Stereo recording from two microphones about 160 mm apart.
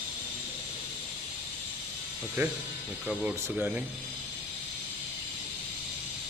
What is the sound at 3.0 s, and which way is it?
Speech, 5° right (ahead or behind).